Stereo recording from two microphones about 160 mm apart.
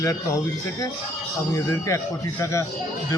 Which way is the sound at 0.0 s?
20° left (ahead or behind).